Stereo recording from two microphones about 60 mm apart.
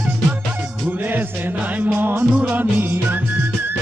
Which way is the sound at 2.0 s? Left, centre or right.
Right.